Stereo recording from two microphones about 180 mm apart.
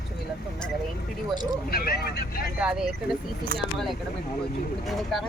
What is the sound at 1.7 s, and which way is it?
Speech, 55° left (ahead or behind).